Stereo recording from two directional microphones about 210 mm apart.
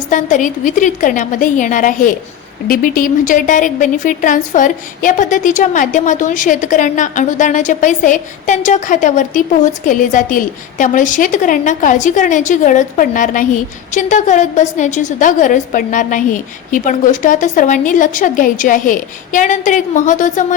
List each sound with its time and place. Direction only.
0.1 s a woman's voice: 35° left (ahead or behind)